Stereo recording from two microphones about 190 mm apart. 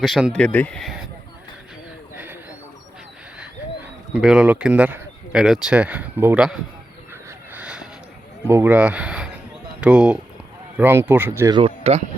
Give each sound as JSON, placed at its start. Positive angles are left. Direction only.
{"t": 0.0, "sound": "speech", "side_deg": 0}
{"t": 2.1, "sound": "a sound", "side_deg": -10}
{"t": 4.1, "sound": "speech", "side_deg": -5}
{"t": 7.1, "sound": "a sound", "side_deg": -10}
{"t": 8.4, "sound": "speech", "side_deg": -10}
{"t": 11.5, "sound": "speech", "side_deg": -30}